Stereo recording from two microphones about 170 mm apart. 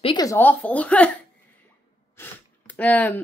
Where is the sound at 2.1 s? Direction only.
10° left (ahead or behind).